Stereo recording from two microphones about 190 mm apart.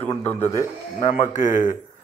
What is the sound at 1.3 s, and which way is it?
Speech, 40° left (ahead or behind).